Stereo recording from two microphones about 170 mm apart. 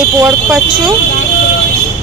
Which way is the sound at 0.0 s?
5° right (ahead or behind).